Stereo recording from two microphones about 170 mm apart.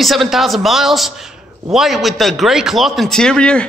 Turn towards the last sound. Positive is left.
turn(degrees=5)  # may be behind; listen again after turning